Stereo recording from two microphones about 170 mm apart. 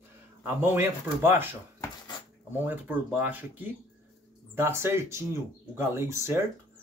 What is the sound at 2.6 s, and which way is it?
Speech, 10° right (ahead or behind).